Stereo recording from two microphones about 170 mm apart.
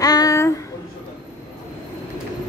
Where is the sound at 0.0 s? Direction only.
20° left (ahead or behind).